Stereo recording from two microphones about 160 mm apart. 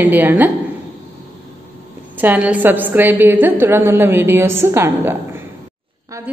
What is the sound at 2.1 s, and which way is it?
A woman's voice, 10° right (ahead or behind).